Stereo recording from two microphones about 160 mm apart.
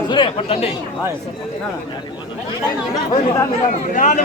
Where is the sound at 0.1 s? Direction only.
35° left (ahead or behind).